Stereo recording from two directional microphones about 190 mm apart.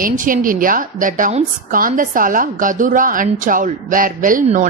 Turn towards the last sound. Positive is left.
turn(degrees=-45)  # may be behind; listen again after turning